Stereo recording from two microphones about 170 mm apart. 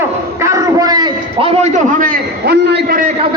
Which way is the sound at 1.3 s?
35° right (ahead or behind).